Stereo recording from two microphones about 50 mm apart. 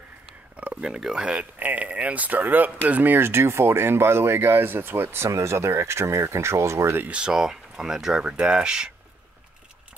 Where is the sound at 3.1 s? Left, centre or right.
Right.